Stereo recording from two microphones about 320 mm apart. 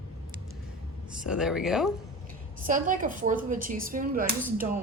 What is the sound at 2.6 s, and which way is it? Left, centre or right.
Speech, right.